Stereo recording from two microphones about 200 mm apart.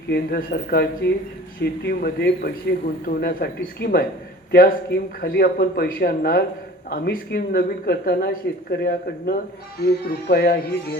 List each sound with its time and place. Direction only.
0.1 s speech: 50° left (ahead or behind)